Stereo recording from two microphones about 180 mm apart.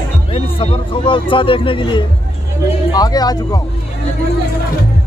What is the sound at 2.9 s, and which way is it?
Speech, 20° left (ahead or behind).